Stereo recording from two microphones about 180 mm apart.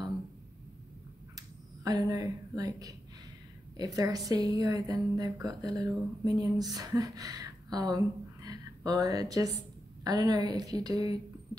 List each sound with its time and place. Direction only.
1.9 s speech: 20° right (ahead or behind)